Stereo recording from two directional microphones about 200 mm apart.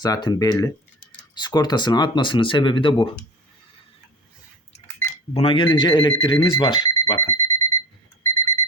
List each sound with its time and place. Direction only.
0.0 s speech: 20° left (ahead or behind)
5.3 s speech: 30° left (ahead or behind)
7.0 s alarm clock: 10° left (ahead or behind)